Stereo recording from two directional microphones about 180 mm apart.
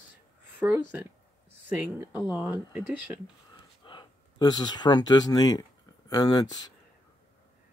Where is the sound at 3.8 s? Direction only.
25° left (ahead or behind).